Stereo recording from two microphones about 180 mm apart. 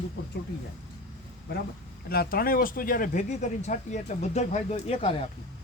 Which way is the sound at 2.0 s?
55° left (ahead or behind).